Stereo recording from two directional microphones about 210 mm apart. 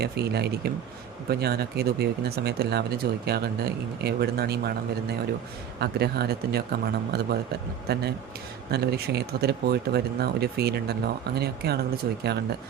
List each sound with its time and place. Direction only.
0.0 s speech: 50° right (ahead or behind)
5.8 s speech: 50° right (ahead or behind)